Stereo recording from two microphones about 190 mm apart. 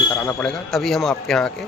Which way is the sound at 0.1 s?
10° left (ahead or behind).